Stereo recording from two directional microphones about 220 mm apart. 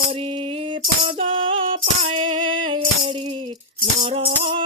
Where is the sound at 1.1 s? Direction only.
25° right (ahead or behind).